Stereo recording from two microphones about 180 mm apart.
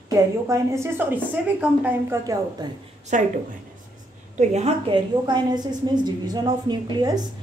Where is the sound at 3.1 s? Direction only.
45° right (ahead or behind).